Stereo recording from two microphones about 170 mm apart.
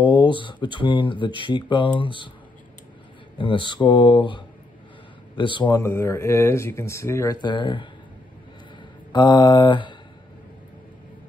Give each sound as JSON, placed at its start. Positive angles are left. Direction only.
{"t": 0.0, "sound": "speech", "side_deg": 30}
{"t": 3.3, "sound": "speech", "side_deg": 30}
{"t": 7.4, "sound": "speech", "side_deg": 30}
{"t": 9.1, "sound": "speech", "side_deg": 25}